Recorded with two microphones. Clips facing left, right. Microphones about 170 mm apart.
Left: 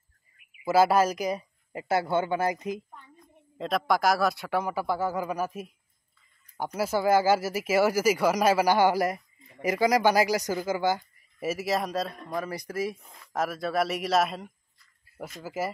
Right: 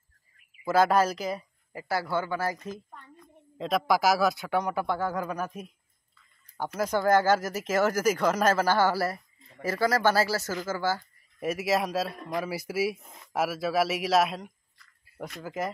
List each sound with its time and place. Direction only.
0.7 s speech: 10° left (ahead or behind)
3.5 s a man's voice: centre (ahead or behind)
6.8 s speech: 10° left (ahead or behind)
11.3 s a man's voice: centre (ahead or behind)